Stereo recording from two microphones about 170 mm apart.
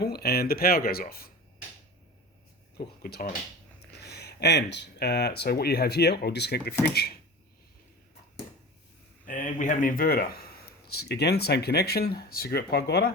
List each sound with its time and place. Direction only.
0.0 s speech: 65° left (ahead or behind)
2.7 s speech: 65° left (ahead or behind)
3.9 s speech: 75° left (ahead or behind)
9.2 s speech: 50° left (ahead or behind)
10.8 s speech: 70° left (ahead or behind)